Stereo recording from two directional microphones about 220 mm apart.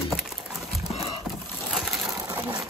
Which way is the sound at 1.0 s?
Centre (ahead or behind).